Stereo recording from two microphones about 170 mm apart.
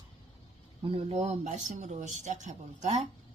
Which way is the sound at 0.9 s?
35° right (ahead or behind).